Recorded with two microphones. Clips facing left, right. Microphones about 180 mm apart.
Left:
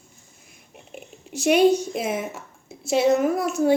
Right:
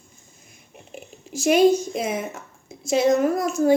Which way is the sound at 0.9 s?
Centre (ahead or behind).